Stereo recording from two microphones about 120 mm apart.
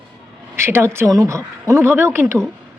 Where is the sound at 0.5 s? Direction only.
20° right (ahead or behind).